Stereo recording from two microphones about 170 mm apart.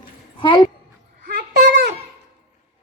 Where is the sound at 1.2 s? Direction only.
60° right (ahead or behind); by 1.9 s 85° right.